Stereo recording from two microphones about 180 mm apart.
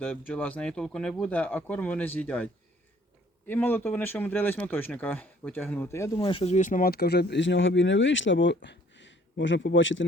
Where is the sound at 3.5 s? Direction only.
10° left (ahead or behind).